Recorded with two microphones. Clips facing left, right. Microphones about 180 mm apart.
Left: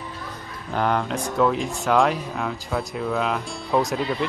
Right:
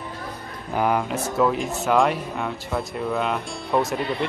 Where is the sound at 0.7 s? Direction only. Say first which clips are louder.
Right 1 dB; 5° right (ahead or behind).